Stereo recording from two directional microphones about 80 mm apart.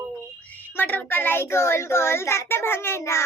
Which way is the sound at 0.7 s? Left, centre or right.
Left.